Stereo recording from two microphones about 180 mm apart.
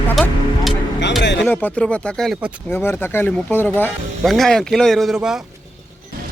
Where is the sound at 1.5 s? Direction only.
10° left (ahead or behind).